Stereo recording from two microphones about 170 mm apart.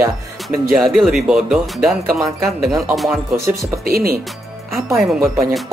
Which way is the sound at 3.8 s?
60° right (ahead or behind).